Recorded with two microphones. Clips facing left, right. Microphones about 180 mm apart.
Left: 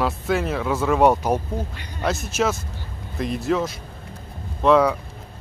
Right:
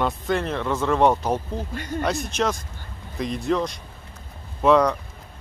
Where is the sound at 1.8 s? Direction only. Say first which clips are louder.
Right 9 dB; 45° right (ahead or behind).